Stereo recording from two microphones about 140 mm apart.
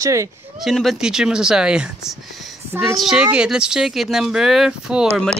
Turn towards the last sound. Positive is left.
turn(degrees=-5)  # may be behind; listen again after turning